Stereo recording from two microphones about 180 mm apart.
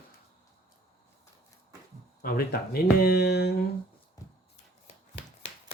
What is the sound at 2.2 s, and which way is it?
Speech, 55° left (ahead or behind).